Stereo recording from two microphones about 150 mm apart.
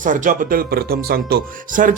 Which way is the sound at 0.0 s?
60° right (ahead or behind).